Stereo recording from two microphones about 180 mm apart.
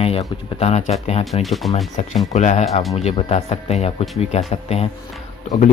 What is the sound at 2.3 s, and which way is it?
Speech, 40° left (ahead or behind).